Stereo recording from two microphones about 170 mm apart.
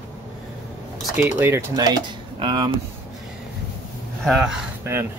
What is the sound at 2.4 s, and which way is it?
Speech, 25° right (ahead or behind).